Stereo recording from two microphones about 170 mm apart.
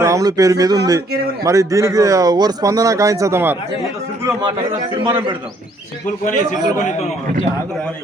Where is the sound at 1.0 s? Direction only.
65° right (ahead or behind).